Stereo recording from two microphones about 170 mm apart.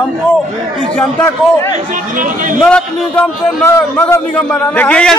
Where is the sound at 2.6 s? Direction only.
5° left (ahead or behind).